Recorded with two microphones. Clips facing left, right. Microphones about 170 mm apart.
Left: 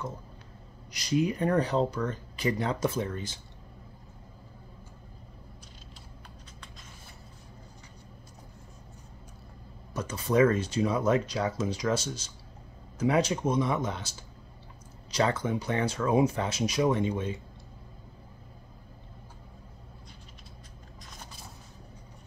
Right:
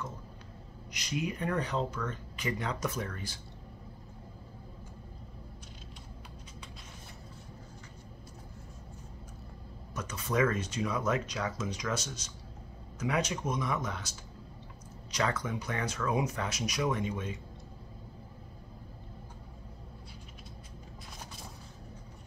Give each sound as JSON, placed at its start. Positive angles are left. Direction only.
{"t": 0.9, "sound": "speech", "side_deg": 35}
{"t": 9.9, "sound": "speech", "side_deg": 30}